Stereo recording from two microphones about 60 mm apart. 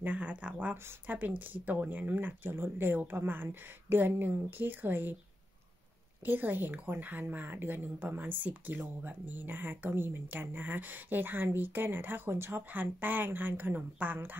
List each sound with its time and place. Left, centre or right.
0.0 s a woman's voice: right
6.2 s a woman's voice: right